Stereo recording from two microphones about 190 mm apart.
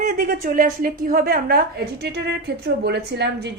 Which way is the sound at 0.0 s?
45° right (ahead or behind).